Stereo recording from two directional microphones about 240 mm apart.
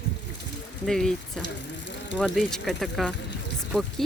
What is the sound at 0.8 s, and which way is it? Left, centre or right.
Speech, centre.